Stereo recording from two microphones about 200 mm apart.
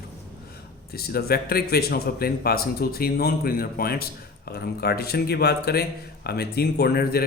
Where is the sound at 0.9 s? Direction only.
50° left (ahead or behind).